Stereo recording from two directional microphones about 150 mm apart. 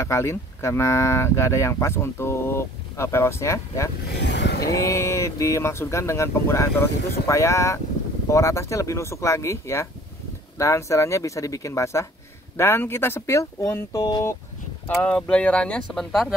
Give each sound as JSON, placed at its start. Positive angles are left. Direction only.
{"t": 0.0, "sound": "speech", "side_deg": 20}
{"t": 4.1, "sound": "vehicle", "side_deg": 90}
{"t": 4.6, "sound": "speech", "side_deg": 20}
{"t": 15.0, "sound": "speech", "side_deg": 5}